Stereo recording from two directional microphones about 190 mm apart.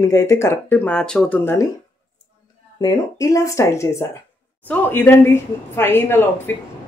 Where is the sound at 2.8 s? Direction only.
15° left (ahead or behind).